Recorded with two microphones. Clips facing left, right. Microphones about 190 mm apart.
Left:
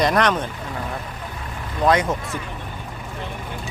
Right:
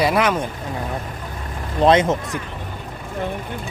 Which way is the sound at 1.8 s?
25° right (ahead or behind).